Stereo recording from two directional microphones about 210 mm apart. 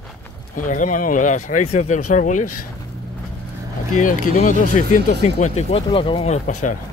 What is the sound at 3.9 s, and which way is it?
Speech, 40° left (ahead or behind).